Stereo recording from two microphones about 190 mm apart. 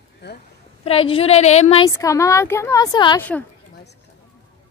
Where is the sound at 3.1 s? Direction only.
10° left (ahead or behind).